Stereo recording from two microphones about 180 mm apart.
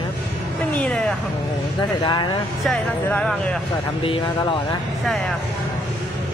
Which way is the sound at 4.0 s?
30° left (ahead or behind).